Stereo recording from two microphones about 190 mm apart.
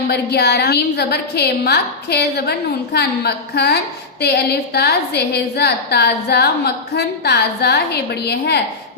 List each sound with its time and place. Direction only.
0.1 s a woman's voice: 60° left (ahead or behind)